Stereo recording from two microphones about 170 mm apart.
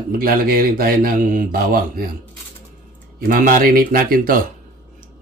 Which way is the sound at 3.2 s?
55° right (ahead or behind).